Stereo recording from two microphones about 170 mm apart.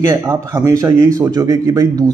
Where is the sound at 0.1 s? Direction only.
15° right (ahead or behind).